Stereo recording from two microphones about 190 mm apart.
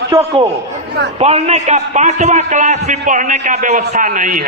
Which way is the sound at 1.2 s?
35° right (ahead or behind).